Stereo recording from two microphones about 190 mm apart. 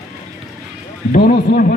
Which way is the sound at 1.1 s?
55° left (ahead or behind).